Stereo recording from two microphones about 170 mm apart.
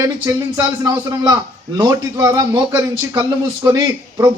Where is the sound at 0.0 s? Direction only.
20° right (ahead or behind).